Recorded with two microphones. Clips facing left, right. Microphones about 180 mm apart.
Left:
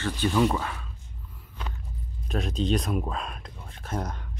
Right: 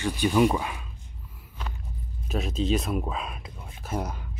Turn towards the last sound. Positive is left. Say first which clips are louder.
# right 1 dB
turn(degrees=-10)  # may be behind; listen again after turning